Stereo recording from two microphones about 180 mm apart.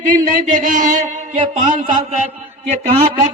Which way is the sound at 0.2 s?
45° right (ahead or behind).